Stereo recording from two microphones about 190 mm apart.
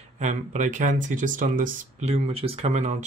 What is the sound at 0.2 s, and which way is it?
Speech, 40° right (ahead or behind).